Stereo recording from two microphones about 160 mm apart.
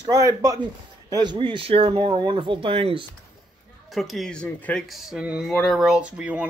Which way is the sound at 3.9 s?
Centre (ahead or behind).